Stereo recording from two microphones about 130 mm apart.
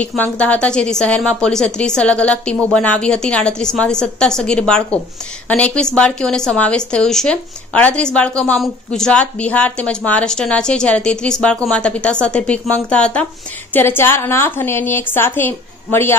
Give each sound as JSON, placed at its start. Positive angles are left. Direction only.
{"t": 0.0, "sound": "speech", "side_deg": 10}